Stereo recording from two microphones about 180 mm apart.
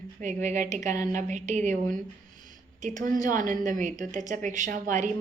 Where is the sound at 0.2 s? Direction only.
45° right (ahead or behind).